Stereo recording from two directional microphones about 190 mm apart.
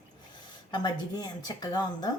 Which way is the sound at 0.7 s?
20° left (ahead or behind).